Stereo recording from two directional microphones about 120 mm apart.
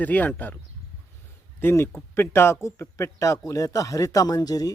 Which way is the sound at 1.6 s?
20° left (ahead or behind).